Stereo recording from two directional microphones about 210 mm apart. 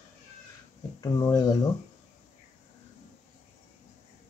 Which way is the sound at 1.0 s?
15° left (ahead or behind).